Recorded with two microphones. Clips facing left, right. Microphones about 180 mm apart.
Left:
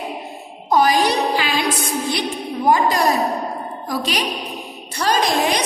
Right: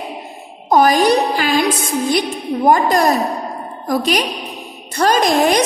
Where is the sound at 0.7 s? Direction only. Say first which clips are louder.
Right 4 dB; 50° right (ahead or behind).